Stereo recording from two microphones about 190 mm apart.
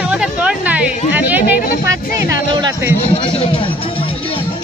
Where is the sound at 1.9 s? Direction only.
20° right (ahead or behind).